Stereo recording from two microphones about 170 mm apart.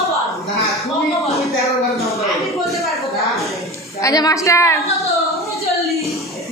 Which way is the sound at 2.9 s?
Centre (ahead or behind).